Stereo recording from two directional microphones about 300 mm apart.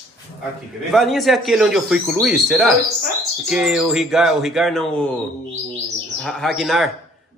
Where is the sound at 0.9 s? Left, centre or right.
Centre.